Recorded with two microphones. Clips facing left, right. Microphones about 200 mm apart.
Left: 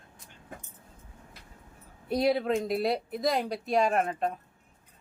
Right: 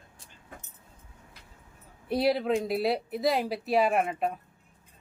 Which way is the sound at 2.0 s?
Centre (ahead or behind).